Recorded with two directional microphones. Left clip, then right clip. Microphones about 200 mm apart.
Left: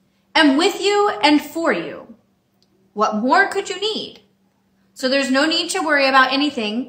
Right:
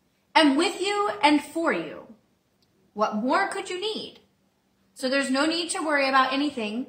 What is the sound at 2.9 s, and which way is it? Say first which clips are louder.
A woman's voice: left 8 dB; 10° left (ahead or behind).